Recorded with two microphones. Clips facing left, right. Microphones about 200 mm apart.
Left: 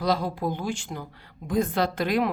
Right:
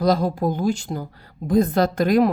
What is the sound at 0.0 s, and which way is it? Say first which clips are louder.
A woman's voice: right 6 dB; 40° right (ahead or behind).